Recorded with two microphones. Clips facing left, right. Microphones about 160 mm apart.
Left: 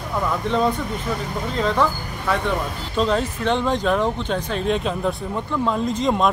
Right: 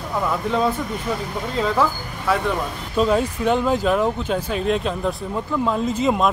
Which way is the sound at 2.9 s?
10° right (ahead or behind).